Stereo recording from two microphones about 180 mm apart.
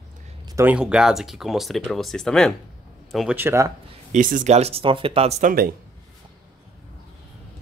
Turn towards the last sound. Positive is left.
turn(degrees=-50)  # may be behind; listen again after turning